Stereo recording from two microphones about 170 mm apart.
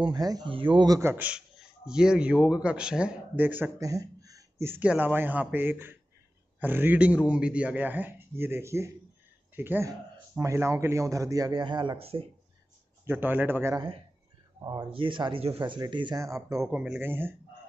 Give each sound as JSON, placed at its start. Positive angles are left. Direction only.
{"t": 0.0, "sound": "a man's voice", "side_deg": -25}
{"t": 13.0, "sound": "a man's voice", "side_deg": -10}
{"t": 16.5, "sound": "a man's voice", "side_deg": -5}